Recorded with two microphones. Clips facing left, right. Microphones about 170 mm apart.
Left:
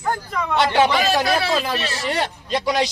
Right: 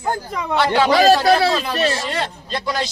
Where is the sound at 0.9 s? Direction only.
40° right (ahead or behind).